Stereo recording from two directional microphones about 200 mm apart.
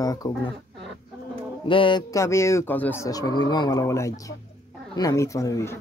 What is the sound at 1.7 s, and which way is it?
Speech, 25° left (ahead or behind).